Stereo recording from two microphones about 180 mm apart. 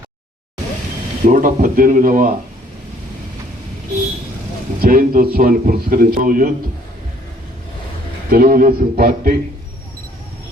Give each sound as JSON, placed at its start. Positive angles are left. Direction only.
{"t": 1.3, "sound": "a man's voice", "side_deg": -50}
{"t": 4.8, "sound": "a man's voice", "side_deg": -50}
{"t": 8.3, "sound": "a man's voice", "side_deg": -55}